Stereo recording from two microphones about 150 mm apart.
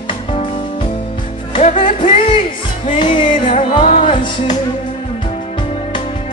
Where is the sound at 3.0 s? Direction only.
35° left (ahead or behind).